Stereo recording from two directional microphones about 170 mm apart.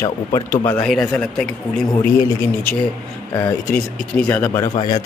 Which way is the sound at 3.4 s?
5° left (ahead or behind).